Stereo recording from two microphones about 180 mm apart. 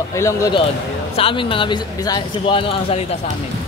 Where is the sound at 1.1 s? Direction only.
30° left (ahead or behind).